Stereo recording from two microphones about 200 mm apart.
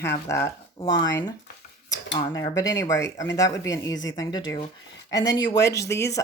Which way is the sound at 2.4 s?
15° left (ahead or behind).